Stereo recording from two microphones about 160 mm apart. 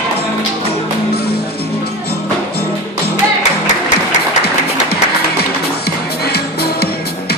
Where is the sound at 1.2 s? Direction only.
80° left.